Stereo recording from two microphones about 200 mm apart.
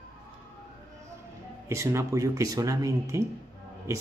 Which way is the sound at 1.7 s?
15° right (ahead or behind).